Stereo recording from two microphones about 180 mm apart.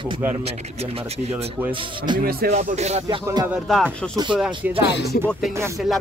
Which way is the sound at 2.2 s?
55° right (ahead or behind).